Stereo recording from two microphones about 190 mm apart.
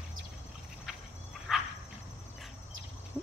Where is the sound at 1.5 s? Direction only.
Centre (ahead or behind).